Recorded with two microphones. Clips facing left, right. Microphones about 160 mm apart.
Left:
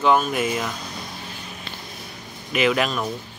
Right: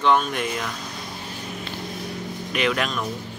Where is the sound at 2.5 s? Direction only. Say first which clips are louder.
Left 4 dB; 5° left (ahead or behind).